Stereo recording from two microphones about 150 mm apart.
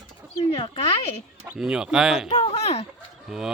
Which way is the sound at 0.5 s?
35° left (ahead or behind).